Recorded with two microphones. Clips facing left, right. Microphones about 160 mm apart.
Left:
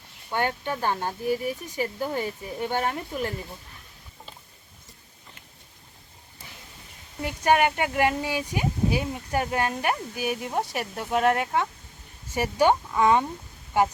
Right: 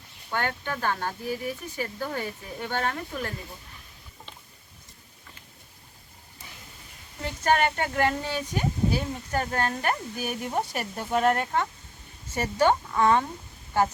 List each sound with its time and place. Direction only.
0.3 s speech: 15° left (ahead or behind)
7.2 s speech: 15° left (ahead or behind)